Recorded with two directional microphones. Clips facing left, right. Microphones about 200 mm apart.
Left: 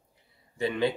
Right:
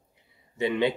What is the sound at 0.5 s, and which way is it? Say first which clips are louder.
Speech: right 2 dB; 20° right (ahead or behind).